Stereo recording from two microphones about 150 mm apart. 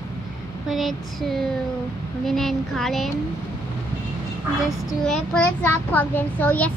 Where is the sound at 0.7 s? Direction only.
Centre (ahead or behind).